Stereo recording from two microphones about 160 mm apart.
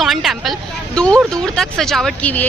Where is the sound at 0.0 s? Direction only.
Centre (ahead or behind).